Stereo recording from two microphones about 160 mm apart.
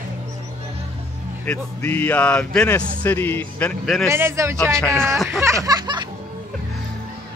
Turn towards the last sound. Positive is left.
turn(degrees=-25)  # may be behind; listen again after turning